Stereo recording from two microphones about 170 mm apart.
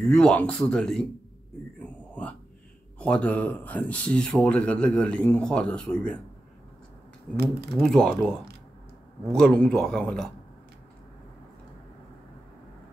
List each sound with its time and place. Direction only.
0.0 s speech: 5° left (ahead or behind)
3.0 s speech: 5° left (ahead or behind)
7.8 s speech: 5° left (ahead or behind)